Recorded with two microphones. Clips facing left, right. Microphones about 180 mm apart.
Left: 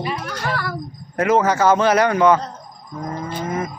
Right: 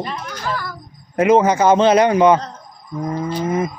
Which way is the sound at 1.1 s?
20° right (ahead or behind).